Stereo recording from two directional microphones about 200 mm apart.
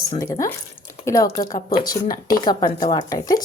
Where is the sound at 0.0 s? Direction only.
15° left (ahead or behind).